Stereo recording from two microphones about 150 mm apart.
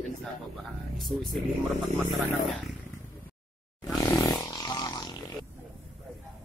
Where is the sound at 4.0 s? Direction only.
20° left (ahead or behind).